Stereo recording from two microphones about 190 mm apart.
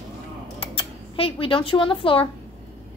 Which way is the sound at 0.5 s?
30° left (ahead or behind).